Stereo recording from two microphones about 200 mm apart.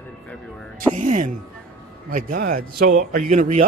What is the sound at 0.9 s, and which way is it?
A man's voice, 40° right (ahead or behind).